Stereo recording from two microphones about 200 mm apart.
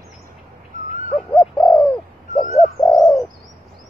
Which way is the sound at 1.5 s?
5° left (ahead or behind).